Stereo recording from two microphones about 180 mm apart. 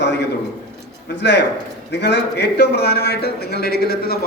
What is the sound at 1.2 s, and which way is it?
A man's voice, 70° left (ahead or behind).